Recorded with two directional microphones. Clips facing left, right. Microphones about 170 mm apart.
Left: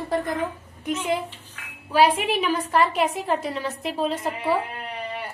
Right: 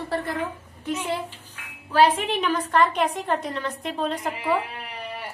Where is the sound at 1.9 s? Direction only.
10° left (ahead or behind).